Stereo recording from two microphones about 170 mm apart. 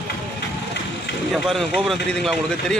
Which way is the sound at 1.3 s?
Centre (ahead or behind).